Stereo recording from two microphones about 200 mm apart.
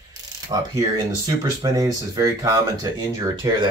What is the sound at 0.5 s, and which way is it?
Speech, 25° right (ahead or behind).